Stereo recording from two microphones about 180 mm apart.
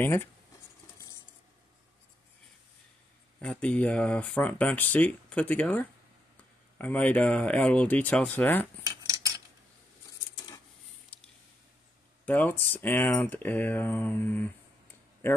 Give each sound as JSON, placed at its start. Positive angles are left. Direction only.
{"t": 0.0, "sound": "speech", "side_deg": 10}
{"t": 3.3, "sound": "speech", "side_deg": 5}
{"t": 9.0, "sound": "cutlery", "side_deg": -15}
{"t": 12.3, "sound": "speech", "side_deg": 10}